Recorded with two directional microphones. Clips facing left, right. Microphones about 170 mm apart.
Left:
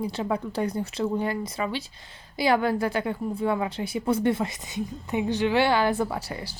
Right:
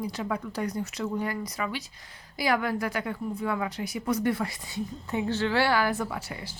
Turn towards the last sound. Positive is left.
turn(degrees=35)  # may be behind; listen again after turning